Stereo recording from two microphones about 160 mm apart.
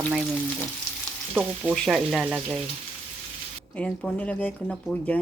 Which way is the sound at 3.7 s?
5° left (ahead or behind).